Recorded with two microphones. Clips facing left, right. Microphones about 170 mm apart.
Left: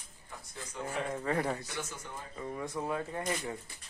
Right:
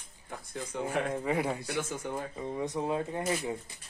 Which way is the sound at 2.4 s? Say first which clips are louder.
Right 2 dB; 20° right (ahead or behind).